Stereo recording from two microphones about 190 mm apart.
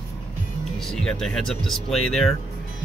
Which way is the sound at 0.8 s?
Centre (ahead or behind).